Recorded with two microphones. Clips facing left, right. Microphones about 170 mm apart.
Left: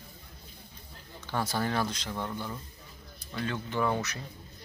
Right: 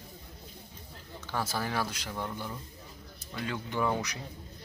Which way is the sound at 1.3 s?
5° right (ahead or behind).